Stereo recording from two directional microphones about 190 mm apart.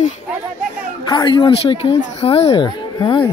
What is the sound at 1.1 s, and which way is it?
Speech, 25° left (ahead or behind).